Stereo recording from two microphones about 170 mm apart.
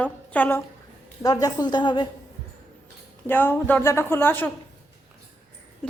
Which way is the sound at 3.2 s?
10° left (ahead or behind).